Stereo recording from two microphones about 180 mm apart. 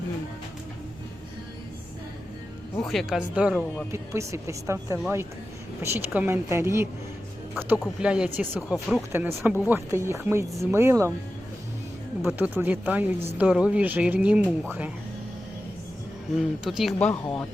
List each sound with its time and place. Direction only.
2.7 s speech: centre (ahead or behind); by 11.1 s 15° right (ahead or behind)
12.2 s speech: 10° right (ahead or behind)
16.4 s speech: centre (ahead or behind)